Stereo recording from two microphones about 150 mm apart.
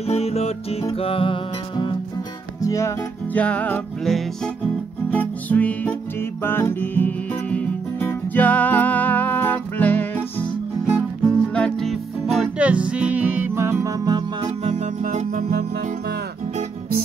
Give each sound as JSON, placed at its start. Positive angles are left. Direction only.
{"t": 0.0, "sound": "music", "side_deg": 45}
{"t": 2.6, "sound": "music", "side_deg": 20}
{"t": 3.3, "sound": "music", "side_deg": 10}
{"t": 11.2, "sound": "music", "side_deg": 5}
{"t": 14.6, "sound": "music", "side_deg": -50}